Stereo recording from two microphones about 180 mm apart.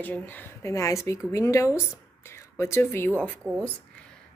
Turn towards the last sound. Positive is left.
turn(degrees=10)  # may be behind; listen again after turning